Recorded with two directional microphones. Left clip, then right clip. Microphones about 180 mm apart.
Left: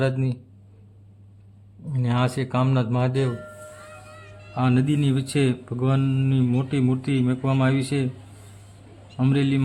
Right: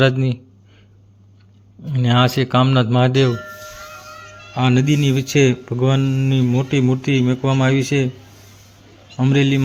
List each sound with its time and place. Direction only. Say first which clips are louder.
0.0 s a man's voice: right 9 dB; 20° right (ahead or behind)
1.9 s a man's voice: right 9 dB; 20° right (ahead or behind)
4.5 s speech: right 5 dB; 10° right (ahead or behind)
9.1 s speech: right 6 dB; 10° right (ahead or behind)